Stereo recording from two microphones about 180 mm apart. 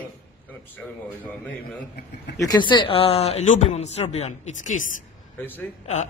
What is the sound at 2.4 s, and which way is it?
Speech, 25° left (ahead or behind).